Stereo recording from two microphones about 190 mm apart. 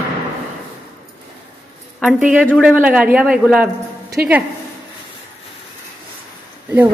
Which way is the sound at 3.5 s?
10° right (ahead or behind).